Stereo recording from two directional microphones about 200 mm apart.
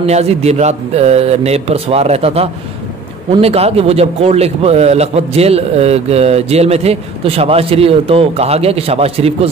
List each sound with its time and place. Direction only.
0.0 s a man's voice: 30° right (ahead or behind)